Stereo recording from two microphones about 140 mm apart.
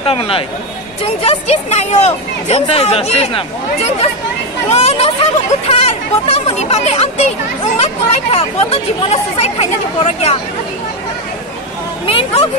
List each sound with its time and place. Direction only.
0.0 s speech: 40° left (ahead or behind)
12.1 s speech: 40° left (ahead or behind)